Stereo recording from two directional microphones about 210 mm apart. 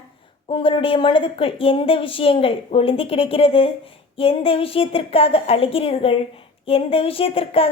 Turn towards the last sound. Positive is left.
turn(degrees=25)  # may be behind; listen again after turning